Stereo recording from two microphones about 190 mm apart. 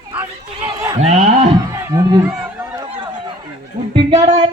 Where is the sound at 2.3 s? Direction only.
10° right (ahead or behind).